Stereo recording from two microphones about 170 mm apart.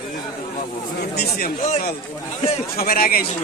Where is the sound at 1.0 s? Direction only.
70° left (ahead or behind).